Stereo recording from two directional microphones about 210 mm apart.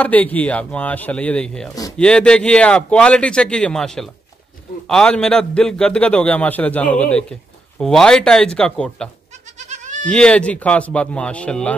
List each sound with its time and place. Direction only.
0.0 s a man's voice: 5° left (ahead or behind)
9.6 s goat: 35° right (ahead or behind)
10.0 s a man's voice: 5° left (ahead or behind)